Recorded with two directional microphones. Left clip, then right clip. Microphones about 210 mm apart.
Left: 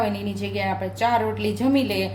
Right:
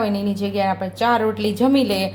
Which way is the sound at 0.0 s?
25° right (ahead or behind).